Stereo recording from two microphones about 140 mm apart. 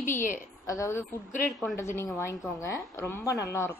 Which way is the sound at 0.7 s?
20° left (ahead or behind).